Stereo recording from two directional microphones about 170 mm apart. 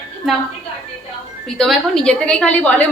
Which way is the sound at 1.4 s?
5° left (ahead or behind).